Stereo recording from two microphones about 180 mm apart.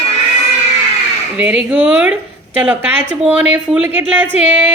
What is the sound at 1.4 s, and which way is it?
Speech, 5° right (ahead or behind).